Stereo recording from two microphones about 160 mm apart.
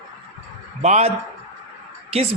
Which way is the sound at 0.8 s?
40° right (ahead or behind).